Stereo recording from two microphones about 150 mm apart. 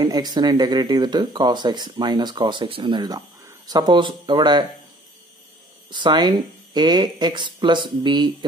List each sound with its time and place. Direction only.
0.0 s speech: 25° right (ahead or behind)
5.9 s speech: 30° right (ahead or behind)